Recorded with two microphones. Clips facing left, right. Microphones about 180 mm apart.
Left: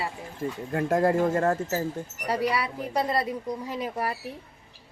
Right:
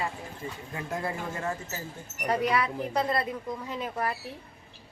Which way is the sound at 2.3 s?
10° left (ahead or behind).